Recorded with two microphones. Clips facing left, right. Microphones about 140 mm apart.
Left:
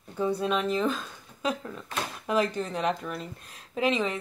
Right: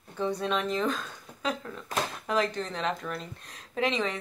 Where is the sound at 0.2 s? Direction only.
5° left (ahead or behind).